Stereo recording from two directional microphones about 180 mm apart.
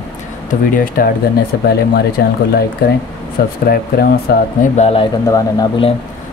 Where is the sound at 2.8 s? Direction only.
55° left (ahead or behind).